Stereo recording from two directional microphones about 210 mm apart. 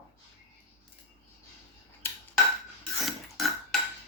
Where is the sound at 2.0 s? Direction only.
10° left (ahead or behind).